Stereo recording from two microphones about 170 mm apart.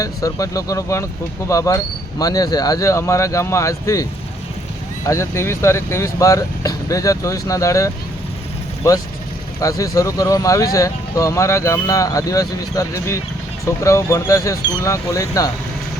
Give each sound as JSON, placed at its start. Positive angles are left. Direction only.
{"t": 0.0, "sound": "speech", "side_deg": 20}
{"t": 5.0, "sound": "speech", "side_deg": 20}
{"t": 9.6, "sound": "speech", "side_deg": 20}